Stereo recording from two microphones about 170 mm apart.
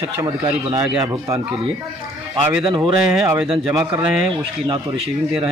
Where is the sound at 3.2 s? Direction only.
10° right (ahead or behind).